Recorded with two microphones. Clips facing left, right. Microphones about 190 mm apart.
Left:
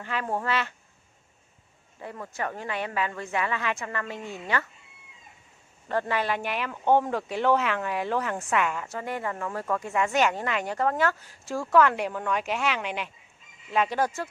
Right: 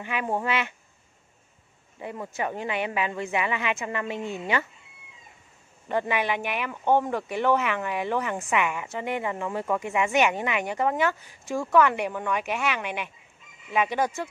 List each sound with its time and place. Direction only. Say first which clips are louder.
0.0 s speech: right 2 dB; 15° right (ahead or behind)
2.0 s speech: right 3 dB; 15° right (ahead or behind)
5.9 s speech: right 1 dB; 15° right (ahead or behind)
8.9 s speech: right 2 dB; 20° right (ahead or behind)